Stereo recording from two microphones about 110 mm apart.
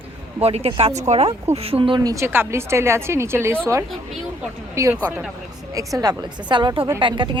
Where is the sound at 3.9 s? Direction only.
Centre (ahead or behind).